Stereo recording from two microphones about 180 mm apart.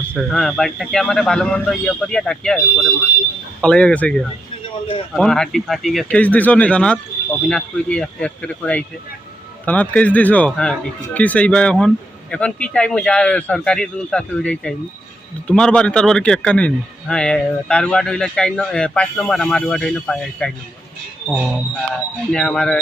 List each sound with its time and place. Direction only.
0.2 s a man's voice: centre (ahead or behind)
21.2 s a man's voice: 5° right (ahead or behind)
22.3 s a man's voice: 5° left (ahead or behind)